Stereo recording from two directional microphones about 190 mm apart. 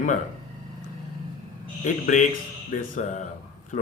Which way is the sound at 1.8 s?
40° left (ahead or behind).